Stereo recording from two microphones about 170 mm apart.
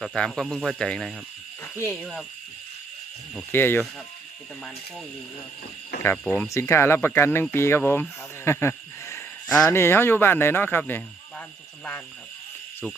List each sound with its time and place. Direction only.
0.0 s speech: centre (ahead or behind)
1.6 s a sound: 15° left (ahead or behind)
3.5 s speech: 15° left (ahead or behind)
6.0 s speech: 10° left (ahead or behind)
8.4 s a sound: 15° left (ahead or behind)
9.6 s speech: 15° left (ahead or behind)